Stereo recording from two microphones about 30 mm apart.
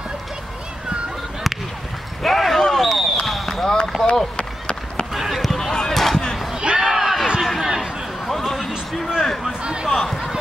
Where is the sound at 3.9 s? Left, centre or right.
Centre.